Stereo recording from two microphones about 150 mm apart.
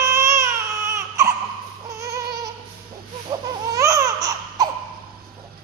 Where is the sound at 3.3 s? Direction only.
25° right (ahead or behind).